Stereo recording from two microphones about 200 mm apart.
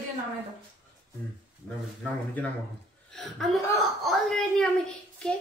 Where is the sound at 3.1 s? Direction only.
Centre (ahead or behind).